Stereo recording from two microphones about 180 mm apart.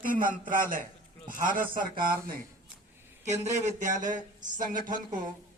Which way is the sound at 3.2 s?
40° right (ahead or behind).